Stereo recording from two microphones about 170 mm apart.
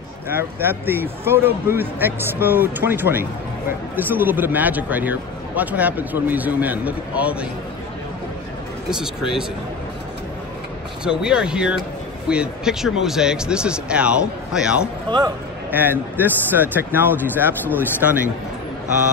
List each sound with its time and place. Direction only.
0.3 s speech: 15° right (ahead or behind)
8.9 s speech: 5° right (ahead or behind)
11.1 s speech: 5° right (ahead or behind)
15.0 s a man's voice: 25° right (ahead or behind)
15.7 s speech: 10° right (ahead or behind)